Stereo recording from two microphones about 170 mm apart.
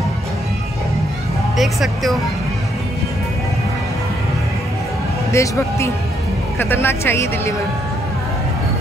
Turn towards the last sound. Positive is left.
turn(degrees=15)  # may be behind; listen again after turning